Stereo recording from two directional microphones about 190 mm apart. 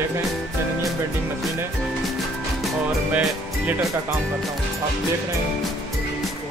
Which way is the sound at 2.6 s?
5° right (ahead or behind).